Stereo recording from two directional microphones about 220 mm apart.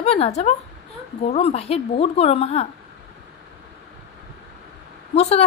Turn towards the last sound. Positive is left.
turn(degrees=30)  # may be behind; listen again after turning